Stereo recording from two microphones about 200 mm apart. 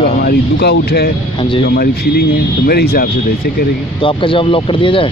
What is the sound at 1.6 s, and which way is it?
Speech, 50° left (ahead or behind).